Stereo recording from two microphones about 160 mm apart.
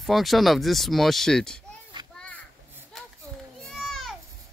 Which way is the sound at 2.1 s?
5° left (ahead or behind).